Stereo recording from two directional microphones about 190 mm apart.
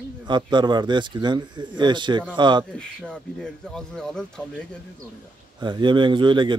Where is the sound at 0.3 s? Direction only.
25° right (ahead or behind).